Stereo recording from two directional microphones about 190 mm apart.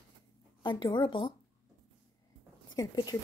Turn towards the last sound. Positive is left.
turn(degrees=20)  # may be behind; listen again after turning